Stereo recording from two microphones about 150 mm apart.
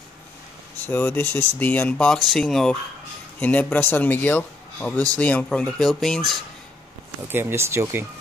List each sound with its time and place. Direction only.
0.8 s speech: 10° left (ahead or behind)
7.2 s speech: 15° right (ahead or behind)